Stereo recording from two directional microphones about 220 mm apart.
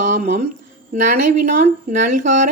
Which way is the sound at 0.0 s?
35° right (ahead or behind).